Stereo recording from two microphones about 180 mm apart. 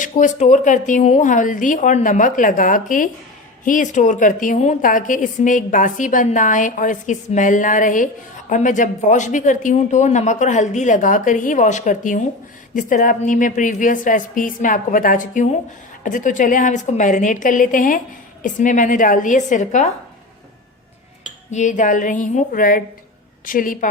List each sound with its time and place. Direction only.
0.0 s a woman's voice: 45° left (ahead or behind)
21.5 s a woman's voice: 40° left (ahead or behind)